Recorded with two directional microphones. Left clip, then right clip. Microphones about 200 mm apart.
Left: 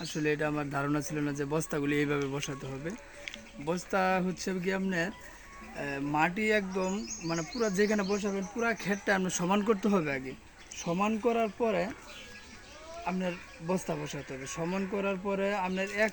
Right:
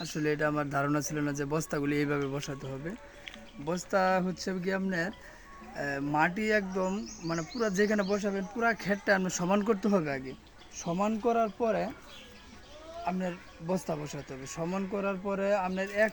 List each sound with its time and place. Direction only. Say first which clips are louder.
0.0 s speech: right 1 dB; 25° right (ahead or behind)
3.9 s speech: right 2 dB; 5° right (ahead or behind)
5.8 s speech: right 1 dB; 20° right (ahead or behind)
13.1 s speech: even; 10° right (ahead or behind)
14.0 s speech: left 2 dB; 25° right (ahead or behind)
14.6 s speech: even; 10° right (ahead or behind)